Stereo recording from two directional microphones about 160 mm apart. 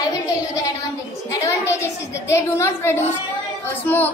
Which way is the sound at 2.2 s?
20° left (ahead or behind).